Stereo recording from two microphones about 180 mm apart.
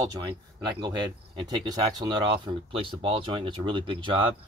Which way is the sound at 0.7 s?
25° right (ahead or behind).